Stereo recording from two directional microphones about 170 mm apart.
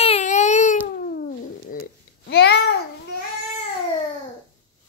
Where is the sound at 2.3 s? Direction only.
75° left (ahead or behind).